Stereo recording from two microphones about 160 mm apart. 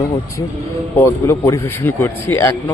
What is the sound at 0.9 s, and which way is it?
A man's voice, 15° left (ahead or behind).